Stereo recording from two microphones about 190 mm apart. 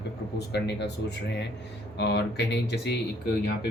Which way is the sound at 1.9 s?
60° left (ahead or behind).